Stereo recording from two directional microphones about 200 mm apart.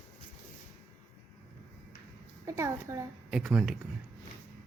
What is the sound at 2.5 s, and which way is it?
A woman's voice, 15° right (ahead or behind).